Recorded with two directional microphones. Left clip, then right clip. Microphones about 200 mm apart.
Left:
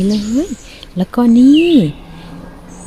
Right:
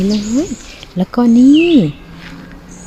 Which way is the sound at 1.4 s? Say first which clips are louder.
Even; 30° right (ahead or behind).